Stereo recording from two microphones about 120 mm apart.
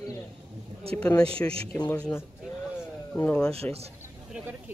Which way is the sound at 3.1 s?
15° left (ahead or behind).